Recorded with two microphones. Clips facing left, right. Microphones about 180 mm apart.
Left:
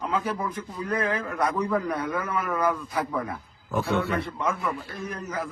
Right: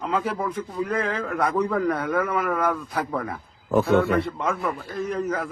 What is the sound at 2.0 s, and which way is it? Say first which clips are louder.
Speech: right 5 dB; 65° right (ahead or behind).